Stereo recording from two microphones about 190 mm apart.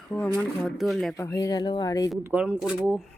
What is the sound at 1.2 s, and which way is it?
Speech, 15° left (ahead or behind).